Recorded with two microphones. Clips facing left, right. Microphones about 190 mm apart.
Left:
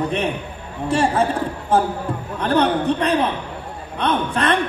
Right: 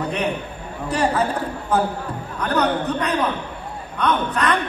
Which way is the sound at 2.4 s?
30° left (ahead or behind).